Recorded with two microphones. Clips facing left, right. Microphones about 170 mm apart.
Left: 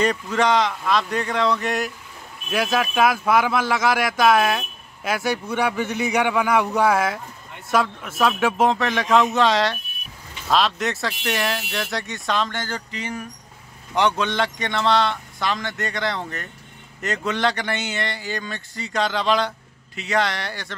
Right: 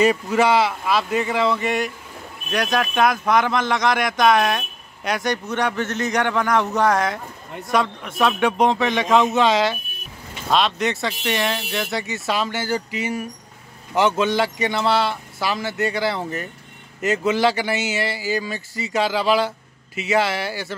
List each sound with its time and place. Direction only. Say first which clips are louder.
0.0 s speech: right 3 dB; 5° right (ahead or behind)